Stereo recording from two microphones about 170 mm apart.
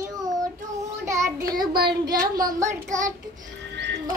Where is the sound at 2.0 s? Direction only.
20° right (ahead or behind).